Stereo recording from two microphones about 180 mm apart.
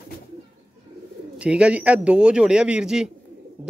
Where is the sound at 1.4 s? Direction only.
5° right (ahead or behind).